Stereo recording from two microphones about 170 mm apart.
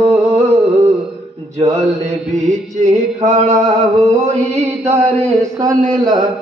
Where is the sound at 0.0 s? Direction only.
40° right (ahead or behind).